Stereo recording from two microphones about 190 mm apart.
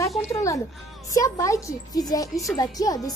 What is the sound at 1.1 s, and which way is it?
Speech, 15° left (ahead or behind).